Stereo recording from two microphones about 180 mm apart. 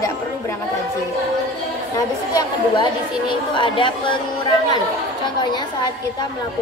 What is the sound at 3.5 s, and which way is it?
Speech, 25° left (ahead or behind).